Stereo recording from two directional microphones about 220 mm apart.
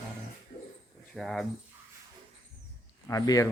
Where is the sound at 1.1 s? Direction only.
Centre (ahead or behind).